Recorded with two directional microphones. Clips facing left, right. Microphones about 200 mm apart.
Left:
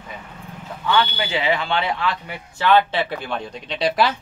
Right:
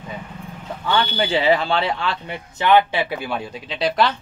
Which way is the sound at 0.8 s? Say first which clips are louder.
Even; 35° right (ahead or behind).